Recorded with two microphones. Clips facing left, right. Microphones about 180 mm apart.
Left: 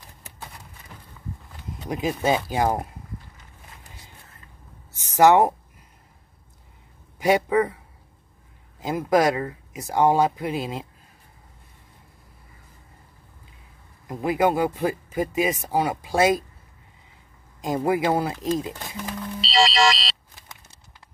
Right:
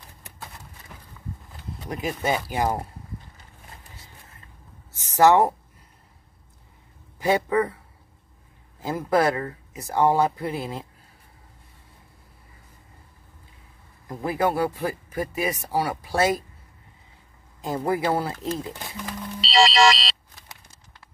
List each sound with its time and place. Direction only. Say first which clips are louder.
1.9 s speech: left 3 dB; 20° left (ahead or behind)
4.9 s speech: left 1 dB; 20° left (ahead or behind)
7.2 s speech: left 2 dB; 15° left (ahead or behind)
8.7 s speech: left 2 dB; 15° left (ahead or behind)
14.0 s speech: left 3 dB; 15° left (ahead or behind)
17.6 s speech: left 2 dB; 15° left (ahead or behind)
19.5 s car alarm: right 2 dB; 60° right (ahead or behind)